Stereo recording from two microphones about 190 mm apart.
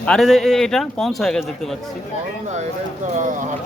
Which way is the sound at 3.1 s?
40° right (ahead or behind).